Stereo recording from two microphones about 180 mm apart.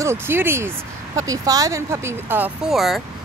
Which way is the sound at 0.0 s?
15° right (ahead or behind).